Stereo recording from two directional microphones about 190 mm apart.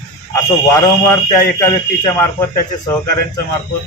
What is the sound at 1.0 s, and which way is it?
A man's voice, 15° left (ahead or behind).